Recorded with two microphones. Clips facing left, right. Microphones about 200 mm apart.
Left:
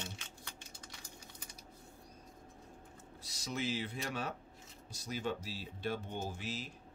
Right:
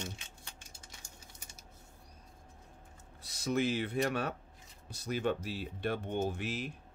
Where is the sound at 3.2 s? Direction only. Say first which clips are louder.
Right 8 dB; 55° right (ahead or behind).